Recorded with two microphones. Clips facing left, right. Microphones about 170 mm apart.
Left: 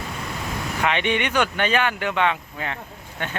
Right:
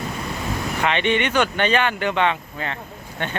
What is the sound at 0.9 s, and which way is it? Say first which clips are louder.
Speech: right 2 dB; 10° left (ahead or behind).